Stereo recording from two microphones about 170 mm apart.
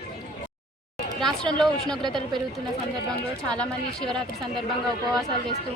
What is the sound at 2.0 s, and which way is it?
Speech, 25° right (ahead or behind).